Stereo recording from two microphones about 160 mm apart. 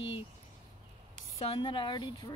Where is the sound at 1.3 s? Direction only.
40° left (ahead or behind).